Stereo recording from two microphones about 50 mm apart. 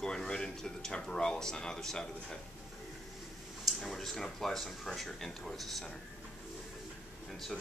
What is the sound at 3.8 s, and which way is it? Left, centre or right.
Speech, centre.